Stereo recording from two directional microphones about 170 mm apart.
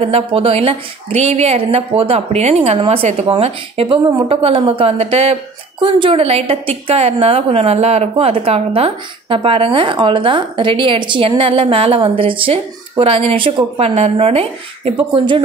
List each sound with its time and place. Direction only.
0.1 s a woman's voice: 35° right (ahead or behind)